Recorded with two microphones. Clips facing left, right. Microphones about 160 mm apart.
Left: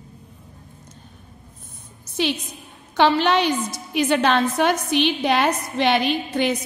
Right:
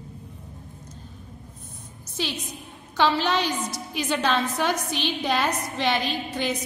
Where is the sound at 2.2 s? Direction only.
65° left (ahead or behind).